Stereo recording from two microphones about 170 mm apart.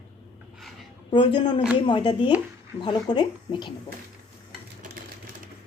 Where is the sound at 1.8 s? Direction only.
30° left (ahead or behind).